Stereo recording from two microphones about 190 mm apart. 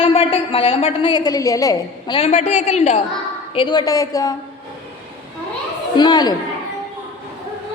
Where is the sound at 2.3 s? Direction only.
35° left (ahead or behind).